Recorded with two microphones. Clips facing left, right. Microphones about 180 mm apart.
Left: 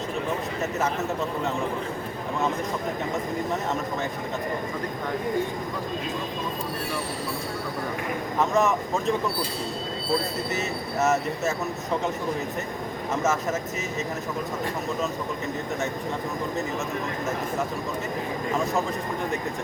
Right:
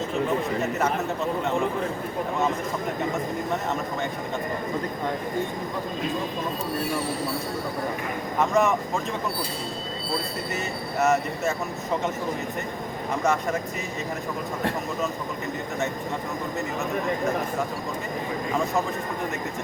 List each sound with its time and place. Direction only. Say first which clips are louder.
0.6 s speech: right 1 dB; centre (ahead or behind)
8.4 s speech: right 1 dB; centre (ahead or behind)
11.0 s speech: right 1 dB; centre (ahead or behind)
13.2 s speech: right 2 dB; 5° left (ahead or behind)